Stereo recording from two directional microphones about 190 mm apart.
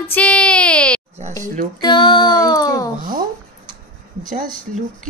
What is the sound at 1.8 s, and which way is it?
Music, 25° left (ahead or behind).